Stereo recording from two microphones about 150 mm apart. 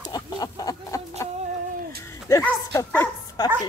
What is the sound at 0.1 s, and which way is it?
Chicken, 25° left (ahead or behind).